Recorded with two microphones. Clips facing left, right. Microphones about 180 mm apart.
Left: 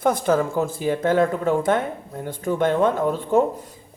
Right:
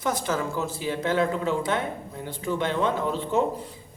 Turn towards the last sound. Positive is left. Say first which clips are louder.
# left 5 dB
turn(degrees=50)  # may be behind; listen again after turning